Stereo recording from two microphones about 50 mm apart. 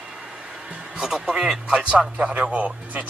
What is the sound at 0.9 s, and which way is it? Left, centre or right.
Speech, centre.